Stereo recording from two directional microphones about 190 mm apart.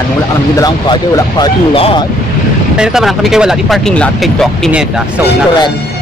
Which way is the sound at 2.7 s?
5° right (ahead or behind).